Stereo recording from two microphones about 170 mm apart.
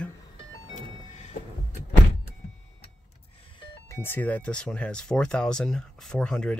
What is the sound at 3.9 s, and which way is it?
Speech, 15° left (ahead or behind).